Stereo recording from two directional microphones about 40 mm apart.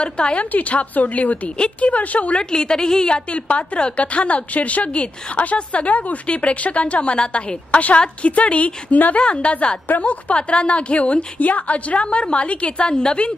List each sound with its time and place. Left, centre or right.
0.0 s a woman's voice: left
0.5 s speech: left
2.5 s a woman's voice: centre
3.3 s a woman's voice: left
12.9 s a woman's voice: centre